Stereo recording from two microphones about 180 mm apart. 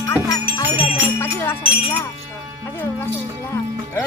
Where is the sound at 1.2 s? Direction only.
10° left (ahead or behind).